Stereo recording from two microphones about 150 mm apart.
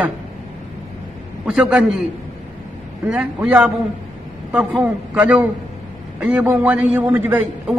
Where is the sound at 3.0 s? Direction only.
10° right (ahead or behind).